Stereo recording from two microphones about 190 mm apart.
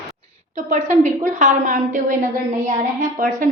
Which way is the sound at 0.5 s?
40° right (ahead or behind).